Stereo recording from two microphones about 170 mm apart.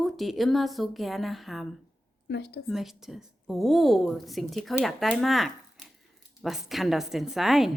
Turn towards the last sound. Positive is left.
turn(degrees=0)  # may be behind; listen again after turning